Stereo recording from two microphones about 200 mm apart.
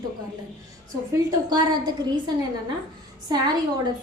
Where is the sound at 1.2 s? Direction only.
20° right (ahead or behind).